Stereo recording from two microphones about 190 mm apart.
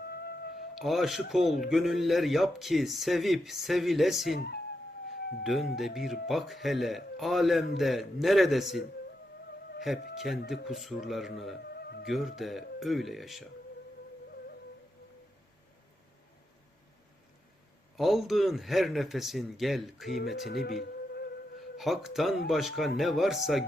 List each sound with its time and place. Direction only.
0.0 s music: 55° left (ahead or behind)
0.8 s a man's voice: centre (ahead or behind)
4.4 s speech: 60° left (ahead or behind)
5.4 s a man's voice: centre (ahead or behind)
9.8 s a man's voice: centre (ahead or behind)
11.7 s music: 55° left (ahead or behind)
12.0 s a man's voice: centre (ahead or behind)
17.9 s a man's voice: centre (ahead or behind)
20.4 s music: 60° left (ahead or behind)
21.8 s a man's voice: centre (ahead or behind)